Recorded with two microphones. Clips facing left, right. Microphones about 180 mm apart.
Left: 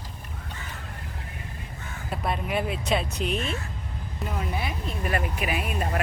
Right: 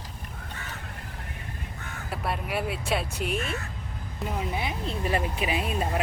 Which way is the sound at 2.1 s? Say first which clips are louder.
Left 2 dB; 5° right (ahead or behind).